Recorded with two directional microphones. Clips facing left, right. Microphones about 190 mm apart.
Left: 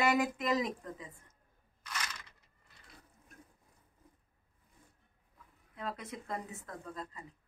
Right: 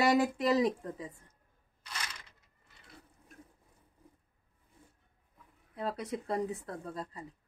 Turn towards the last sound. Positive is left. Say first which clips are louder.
# right 4 dB
turn(degrees=-35)  # may be behind; listen again after turning